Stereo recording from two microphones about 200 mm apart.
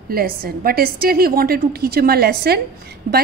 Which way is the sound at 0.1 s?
50° right (ahead or behind).